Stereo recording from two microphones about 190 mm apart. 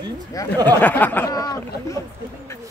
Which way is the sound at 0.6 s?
10° left (ahead or behind).